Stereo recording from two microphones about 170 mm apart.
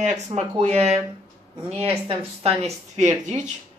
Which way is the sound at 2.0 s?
35° right (ahead or behind).